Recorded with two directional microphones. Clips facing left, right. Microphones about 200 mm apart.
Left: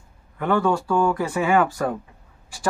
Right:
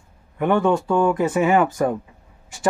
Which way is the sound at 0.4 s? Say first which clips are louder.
Right 3 dB; 20° right (ahead or behind).